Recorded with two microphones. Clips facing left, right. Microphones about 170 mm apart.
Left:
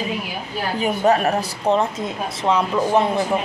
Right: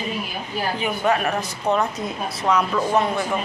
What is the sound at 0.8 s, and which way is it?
A woman's voice, 40° left (ahead or behind).